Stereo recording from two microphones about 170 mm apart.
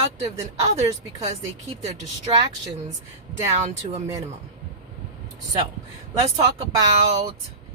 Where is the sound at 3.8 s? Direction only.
40° right (ahead or behind).